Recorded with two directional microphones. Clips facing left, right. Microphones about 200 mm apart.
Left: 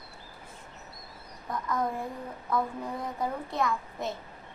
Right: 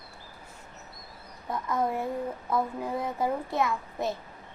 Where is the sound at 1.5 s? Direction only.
25° right (ahead or behind).